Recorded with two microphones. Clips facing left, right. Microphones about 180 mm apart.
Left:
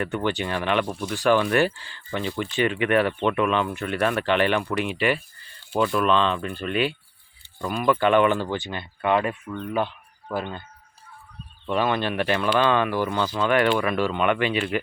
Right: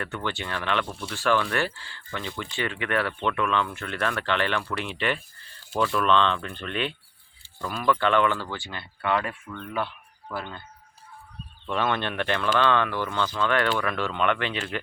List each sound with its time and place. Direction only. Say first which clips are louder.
0.0 s speech: left 6 dB; 15° left (ahead or behind)
11.6 s speech: left 3 dB; 5° left (ahead or behind)